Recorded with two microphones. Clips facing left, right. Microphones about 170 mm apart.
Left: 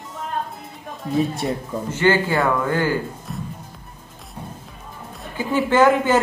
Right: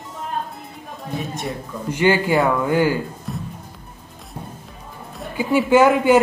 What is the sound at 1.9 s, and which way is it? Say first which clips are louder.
Speech: right 2 dB; 15° right (ahead or behind).